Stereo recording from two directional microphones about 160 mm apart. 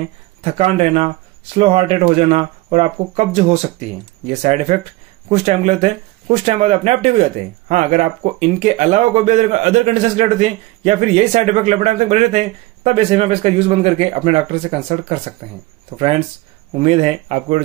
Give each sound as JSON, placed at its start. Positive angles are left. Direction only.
{"t": 0.4, "sound": "speech", "side_deg": -35}